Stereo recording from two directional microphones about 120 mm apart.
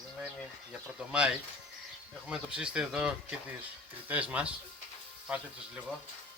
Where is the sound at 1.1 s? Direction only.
5° right (ahead or behind).